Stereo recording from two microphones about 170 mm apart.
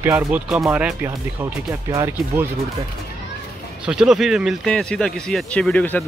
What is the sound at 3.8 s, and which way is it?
A man's voice, 5° right (ahead or behind).